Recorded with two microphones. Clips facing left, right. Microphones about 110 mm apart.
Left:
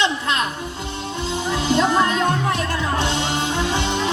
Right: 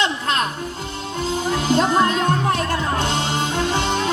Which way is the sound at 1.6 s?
45° right (ahead or behind).